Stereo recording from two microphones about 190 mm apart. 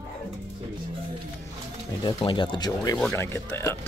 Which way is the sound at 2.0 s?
25° left (ahead or behind).